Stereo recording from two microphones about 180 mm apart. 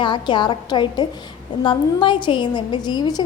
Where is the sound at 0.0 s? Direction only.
25° left (ahead or behind).